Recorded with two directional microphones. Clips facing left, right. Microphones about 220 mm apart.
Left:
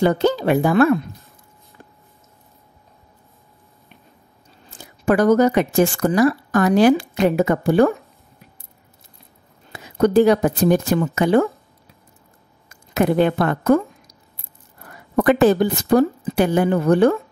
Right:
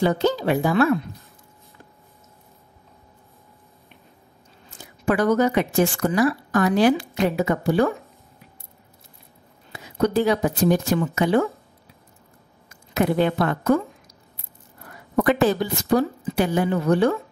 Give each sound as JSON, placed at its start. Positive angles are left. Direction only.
{"t": 0.0, "sound": "a woman's voice", "side_deg": 55}
{"t": 4.6, "sound": "speech", "side_deg": 45}
{"t": 9.7, "sound": "speech", "side_deg": 50}
{"t": 12.9, "sound": "speech", "side_deg": 50}
{"t": 15.2, "sound": "speech", "side_deg": 55}